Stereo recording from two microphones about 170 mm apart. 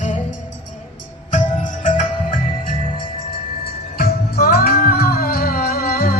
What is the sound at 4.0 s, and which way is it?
Music, 60° left (ahead or behind).